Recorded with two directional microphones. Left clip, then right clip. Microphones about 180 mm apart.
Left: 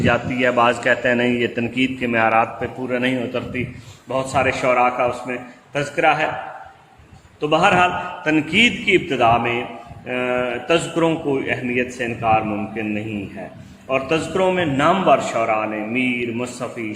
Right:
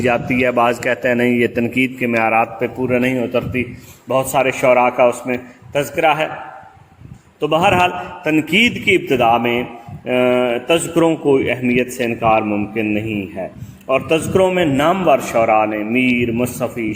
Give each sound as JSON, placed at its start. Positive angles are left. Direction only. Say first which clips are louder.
{"t": 0.0, "sound": "a man's voice", "louder": "right 2 dB", "side_deg": -40}
{"t": 7.4, "sound": "speech", "louder": "right 2 dB", "side_deg": -50}